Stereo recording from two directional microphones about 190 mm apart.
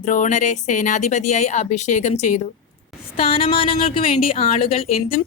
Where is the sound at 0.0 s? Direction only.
40° left (ahead or behind).